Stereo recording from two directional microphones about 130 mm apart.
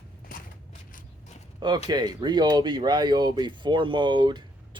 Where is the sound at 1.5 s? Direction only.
35° right (ahead or behind).